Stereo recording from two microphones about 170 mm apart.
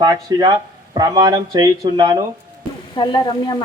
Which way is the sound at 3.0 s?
25° left (ahead or behind).